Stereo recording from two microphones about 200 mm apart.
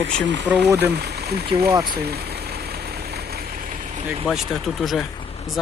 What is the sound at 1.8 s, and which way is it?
Vehicle, 50° right (ahead or behind).